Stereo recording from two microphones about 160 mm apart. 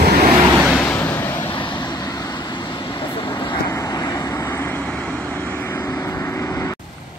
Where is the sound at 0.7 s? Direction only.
10° left (ahead or behind).